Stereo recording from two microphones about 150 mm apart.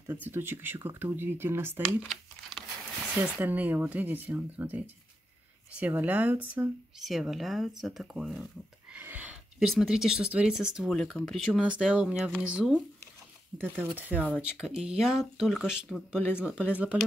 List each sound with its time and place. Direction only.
0.0 s speech: 15° right (ahead or behind)
3.2 s speech: 10° right (ahead or behind)
11.0 s speech: 5° left (ahead or behind)